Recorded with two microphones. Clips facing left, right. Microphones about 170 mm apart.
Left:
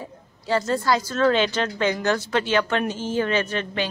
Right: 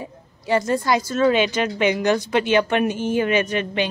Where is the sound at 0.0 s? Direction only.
15° right (ahead or behind).